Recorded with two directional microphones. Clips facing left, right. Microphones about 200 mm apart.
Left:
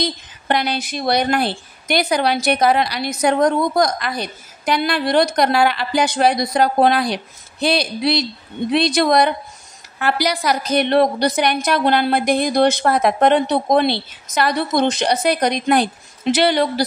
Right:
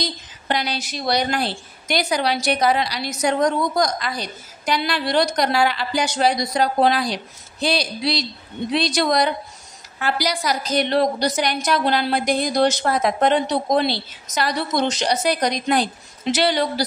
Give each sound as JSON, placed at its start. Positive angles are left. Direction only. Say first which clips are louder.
{"t": 0.0, "sound": "a woman's voice", "louder": "left 5 dB", "side_deg": 55}